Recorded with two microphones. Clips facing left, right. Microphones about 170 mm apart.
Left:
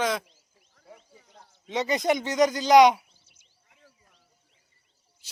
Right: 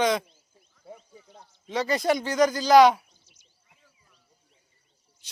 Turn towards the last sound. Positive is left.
turn(degrees=5)  # may be behind; listen again after turning